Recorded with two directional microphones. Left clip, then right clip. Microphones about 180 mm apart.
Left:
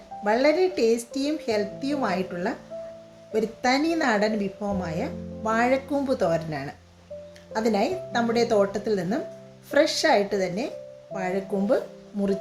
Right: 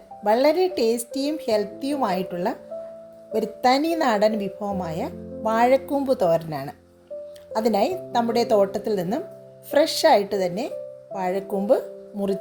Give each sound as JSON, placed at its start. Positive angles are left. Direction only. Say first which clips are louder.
{"t": 0.3, "sound": "a woman's voice", "louder": "right 2 dB", "side_deg": -40}